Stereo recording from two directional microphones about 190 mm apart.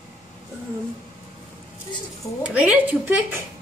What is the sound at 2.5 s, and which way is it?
Speech, 5° right (ahead or behind).